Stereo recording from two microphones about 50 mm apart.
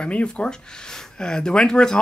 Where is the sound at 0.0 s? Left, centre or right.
Left.